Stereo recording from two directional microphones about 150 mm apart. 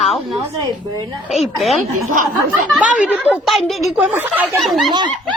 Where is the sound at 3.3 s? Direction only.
Centre (ahead or behind).